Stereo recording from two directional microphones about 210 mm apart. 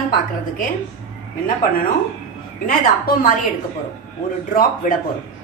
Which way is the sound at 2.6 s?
40° left (ahead or behind).